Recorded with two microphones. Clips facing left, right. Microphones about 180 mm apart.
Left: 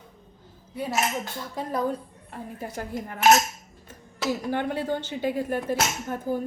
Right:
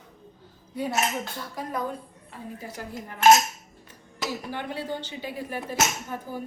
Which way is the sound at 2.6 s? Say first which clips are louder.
Left 7 dB; 50° left (ahead or behind).